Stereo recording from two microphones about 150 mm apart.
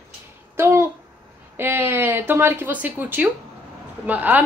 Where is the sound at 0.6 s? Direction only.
15° right (ahead or behind).